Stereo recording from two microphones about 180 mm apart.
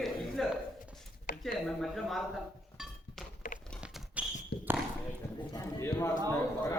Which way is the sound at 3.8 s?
5° right (ahead or behind).